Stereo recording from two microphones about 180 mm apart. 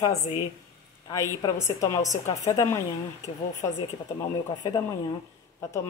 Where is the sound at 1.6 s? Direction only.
20° left (ahead or behind).